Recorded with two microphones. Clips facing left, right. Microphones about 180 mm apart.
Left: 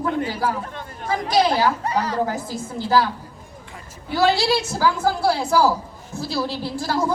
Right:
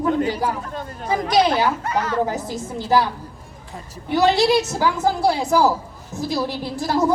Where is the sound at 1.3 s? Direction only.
20° right (ahead or behind).